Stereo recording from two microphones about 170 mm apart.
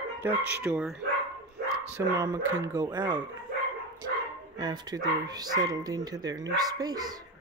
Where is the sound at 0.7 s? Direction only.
5° right (ahead or behind).